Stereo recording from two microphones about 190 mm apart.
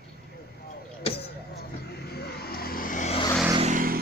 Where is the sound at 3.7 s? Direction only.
50° right (ahead or behind).